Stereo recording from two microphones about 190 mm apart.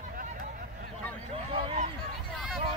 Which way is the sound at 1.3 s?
30° right (ahead or behind).